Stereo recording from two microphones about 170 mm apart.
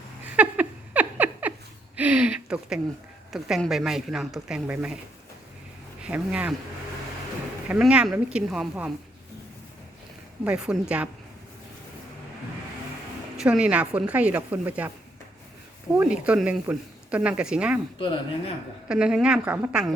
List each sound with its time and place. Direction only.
0.3 s a sound: 10° right (ahead or behind)
2.0 s speech: 5° right (ahead or behind)
6.0 s speech: 5° right (ahead or behind)
7.7 s speech: 5° right (ahead or behind)
10.4 s speech: 5° right (ahead or behind)
13.4 s speech: 5° right (ahead or behind)
16.0 s speech: 5° right (ahead or behind)
17.9 s speech: 30° left (ahead or behind)
18.9 s speech: 5° right (ahead or behind)